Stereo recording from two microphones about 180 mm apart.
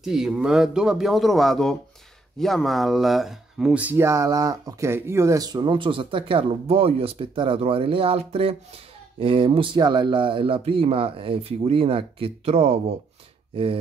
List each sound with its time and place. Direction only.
0.0 s speech: centre (ahead or behind); by 12.8 s 35° right (ahead or behind)